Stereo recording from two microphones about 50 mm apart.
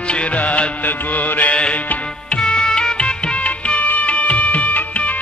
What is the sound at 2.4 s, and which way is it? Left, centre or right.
Music, centre.